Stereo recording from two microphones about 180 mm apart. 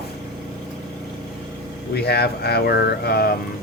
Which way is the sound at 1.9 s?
65° left (ahead or behind).